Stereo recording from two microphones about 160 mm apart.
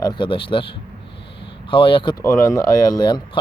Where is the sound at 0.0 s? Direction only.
30° left (ahead or behind).